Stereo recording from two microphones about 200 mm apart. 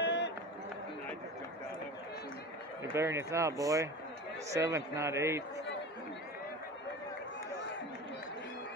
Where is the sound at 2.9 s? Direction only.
15° right (ahead or behind).